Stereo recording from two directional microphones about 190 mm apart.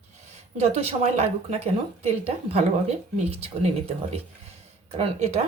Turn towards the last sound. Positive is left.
turn(degrees=-35)  # may be behind; listen again after turning